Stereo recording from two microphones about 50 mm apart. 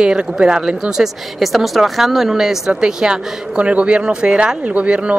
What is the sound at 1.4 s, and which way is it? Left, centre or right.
A woman's voice, centre.